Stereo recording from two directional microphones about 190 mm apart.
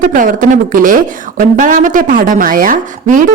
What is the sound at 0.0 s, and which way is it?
Speech, 45° right (ahead or behind).